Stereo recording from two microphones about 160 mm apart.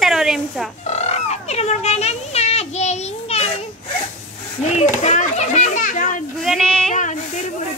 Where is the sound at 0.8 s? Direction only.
45° left (ahead or behind).